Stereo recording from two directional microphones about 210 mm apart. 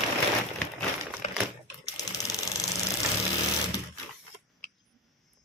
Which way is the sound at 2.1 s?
15° left (ahead or behind).